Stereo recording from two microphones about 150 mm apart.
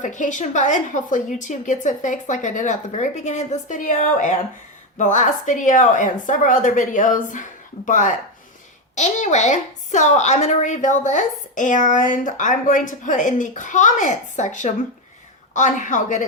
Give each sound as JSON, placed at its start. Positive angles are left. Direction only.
{"t": 0.0, "sound": "a woman's voice", "side_deg": 55}